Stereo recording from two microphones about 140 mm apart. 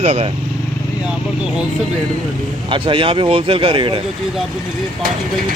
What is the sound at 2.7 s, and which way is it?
Speech, 35° right (ahead or behind).